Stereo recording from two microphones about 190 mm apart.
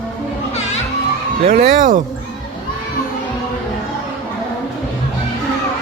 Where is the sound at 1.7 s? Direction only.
45° right (ahead or behind).